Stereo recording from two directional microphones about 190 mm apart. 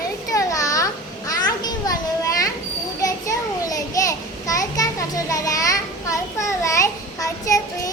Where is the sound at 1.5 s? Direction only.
20° left (ahead or behind).